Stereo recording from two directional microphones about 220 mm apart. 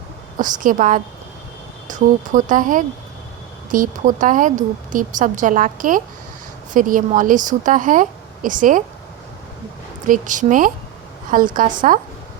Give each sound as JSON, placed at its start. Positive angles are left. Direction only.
{"t": 0.3, "sound": "speech", "side_deg": -35}
{"t": 10.1, "sound": "speech", "side_deg": -35}